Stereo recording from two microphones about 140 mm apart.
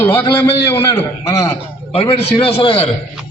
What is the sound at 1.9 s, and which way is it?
Speech, 40° left (ahead or behind).